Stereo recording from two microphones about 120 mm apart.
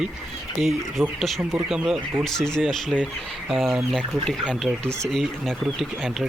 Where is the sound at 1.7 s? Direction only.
5° right (ahead or behind).